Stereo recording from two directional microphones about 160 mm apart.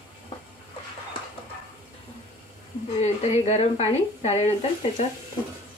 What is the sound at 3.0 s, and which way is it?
Speech, 45° left (ahead or behind).